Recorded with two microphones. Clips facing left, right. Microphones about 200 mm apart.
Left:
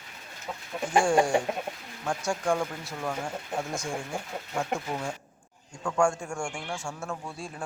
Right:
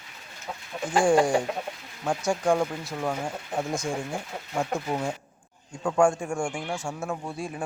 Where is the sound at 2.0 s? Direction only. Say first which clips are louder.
Right 4 dB; 20° right (ahead or behind).